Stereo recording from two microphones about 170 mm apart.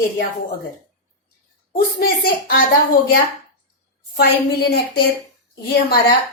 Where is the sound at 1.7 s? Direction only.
60° left (ahead or behind).